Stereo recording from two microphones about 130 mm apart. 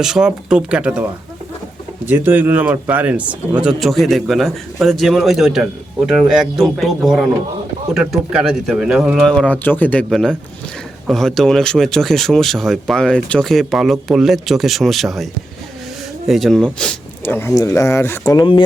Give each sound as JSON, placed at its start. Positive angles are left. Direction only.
{"t": 0.0, "sound": "speech", "side_deg": -5}
{"t": 2.0, "sound": "speech", "side_deg": -15}
{"t": 9.3, "sound": "speech", "side_deg": 10}
{"t": 17.5, "sound": "speech", "side_deg": 25}
{"t": 18.3, "sound": "speech", "side_deg": 40}